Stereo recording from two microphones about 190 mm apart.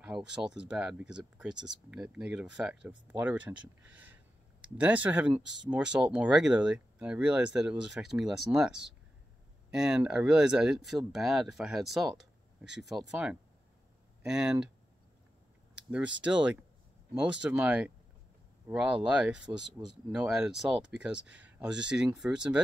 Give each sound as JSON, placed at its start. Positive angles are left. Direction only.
{"t": 0.0, "sound": "speech", "side_deg": -5}
{"t": 15.7, "sound": "a sound", "side_deg": -5}
{"t": 16.2, "sound": "speech", "side_deg": -5}